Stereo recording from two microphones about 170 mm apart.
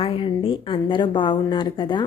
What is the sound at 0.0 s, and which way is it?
A woman's voice, 30° left (ahead or behind).